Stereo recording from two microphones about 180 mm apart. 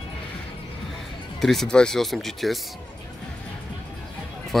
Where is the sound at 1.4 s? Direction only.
Centre (ahead or behind).